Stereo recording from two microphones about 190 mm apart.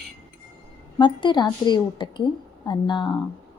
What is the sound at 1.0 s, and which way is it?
A woman's voice, 25° left (ahead or behind).